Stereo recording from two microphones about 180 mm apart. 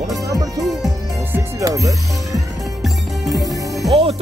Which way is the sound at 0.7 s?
Centre (ahead or behind).